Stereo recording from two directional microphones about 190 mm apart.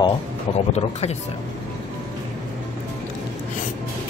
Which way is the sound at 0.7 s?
35° left (ahead or behind).